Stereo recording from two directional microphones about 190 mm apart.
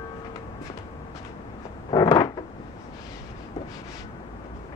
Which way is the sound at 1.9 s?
25° left (ahead or behind).